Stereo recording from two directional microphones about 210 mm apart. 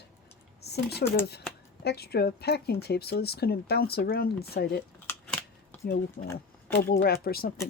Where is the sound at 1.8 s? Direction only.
50° left (ahead or behind).